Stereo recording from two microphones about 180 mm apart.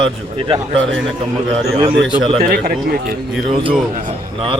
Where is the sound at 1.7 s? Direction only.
30° right (ahead or behind).